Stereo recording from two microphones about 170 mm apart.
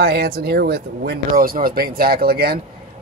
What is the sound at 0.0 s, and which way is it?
Speech, 65° right (ahead or behind).